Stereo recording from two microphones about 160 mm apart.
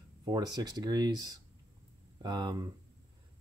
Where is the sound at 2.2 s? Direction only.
30° right (ahead or behind).